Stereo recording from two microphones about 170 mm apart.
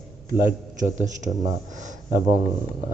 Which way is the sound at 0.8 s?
45° right (ahead or behind).